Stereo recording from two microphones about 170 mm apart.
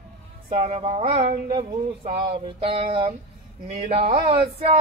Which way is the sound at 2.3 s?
30° right (ahead or behind).